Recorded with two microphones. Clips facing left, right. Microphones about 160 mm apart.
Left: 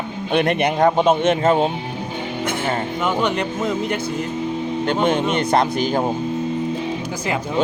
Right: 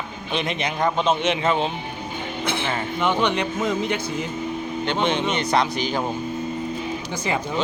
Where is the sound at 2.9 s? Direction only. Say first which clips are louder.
Right 1 dB; 5° left (ahead or behind).